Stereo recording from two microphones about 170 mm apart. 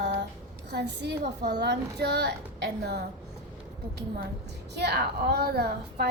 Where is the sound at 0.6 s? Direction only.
80° right.